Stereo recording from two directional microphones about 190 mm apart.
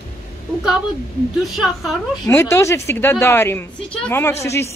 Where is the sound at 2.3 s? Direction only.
15° left (ahead or behind).